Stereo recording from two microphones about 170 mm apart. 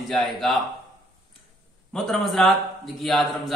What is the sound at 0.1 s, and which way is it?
Speech, centre (ahead or behind).